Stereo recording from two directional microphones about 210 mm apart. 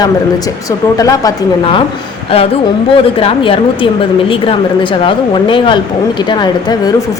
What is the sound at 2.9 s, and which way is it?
A woman's voice, 25° left (ahead or behind).